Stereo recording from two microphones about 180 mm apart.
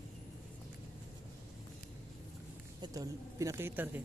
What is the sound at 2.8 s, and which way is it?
Speech, 20° right (ahead or behind).